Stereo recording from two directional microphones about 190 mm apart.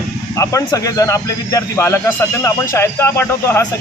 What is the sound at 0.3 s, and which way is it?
A man's voice, 15° left (ahead or behind).